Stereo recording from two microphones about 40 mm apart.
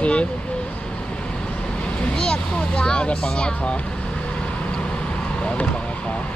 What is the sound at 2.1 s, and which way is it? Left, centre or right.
Speech, centre.